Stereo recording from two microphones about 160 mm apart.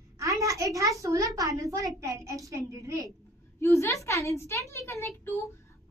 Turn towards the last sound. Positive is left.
turn(degrees=15)  # may be behind; listen again after turning